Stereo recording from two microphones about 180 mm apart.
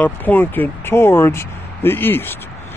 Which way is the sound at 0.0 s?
10° left (ahead or behind).